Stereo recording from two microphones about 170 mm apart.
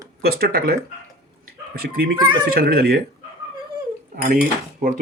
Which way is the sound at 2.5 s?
65° right (ahead or behind).